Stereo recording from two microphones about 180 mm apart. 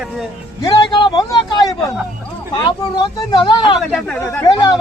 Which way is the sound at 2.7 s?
25° left (ahead or behind).